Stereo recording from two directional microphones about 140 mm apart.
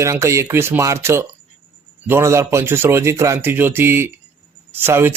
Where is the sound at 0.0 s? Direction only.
20° right (ahead or behind).